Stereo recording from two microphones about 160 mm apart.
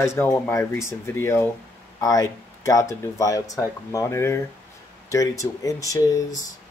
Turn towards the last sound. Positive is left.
turn(degrees=20)  # may be behind; listen again after turning